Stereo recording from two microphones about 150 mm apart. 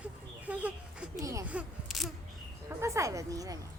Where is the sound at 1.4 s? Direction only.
5° right (ahead or behind).